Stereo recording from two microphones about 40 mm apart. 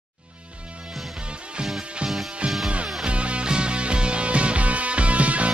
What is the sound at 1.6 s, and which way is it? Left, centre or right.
Music, right.